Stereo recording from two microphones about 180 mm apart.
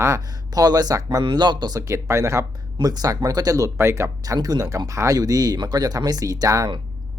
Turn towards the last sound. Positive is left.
turn(degrees=-25)  # may be behind; listen again after turning